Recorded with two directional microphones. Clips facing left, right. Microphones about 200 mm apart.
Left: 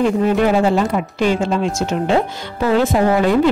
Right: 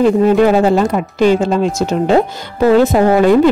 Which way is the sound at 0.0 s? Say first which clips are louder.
Right 5 dB; 40° right (ahead or behind).